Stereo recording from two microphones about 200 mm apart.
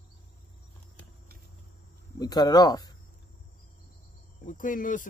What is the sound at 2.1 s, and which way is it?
Speech, 20° left (ahead or behind).